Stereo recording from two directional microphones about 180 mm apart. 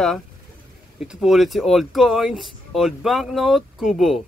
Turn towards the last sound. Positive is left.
turn(degrees=0)  # may be behind; listen again after turning